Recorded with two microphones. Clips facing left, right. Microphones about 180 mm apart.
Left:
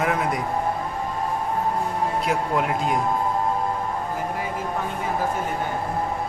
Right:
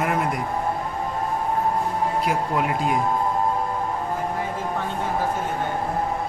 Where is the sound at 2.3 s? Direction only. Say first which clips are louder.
Even; centre (ahead or behind).